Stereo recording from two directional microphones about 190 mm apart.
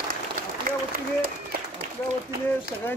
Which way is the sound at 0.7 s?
55° right (ahead or behind).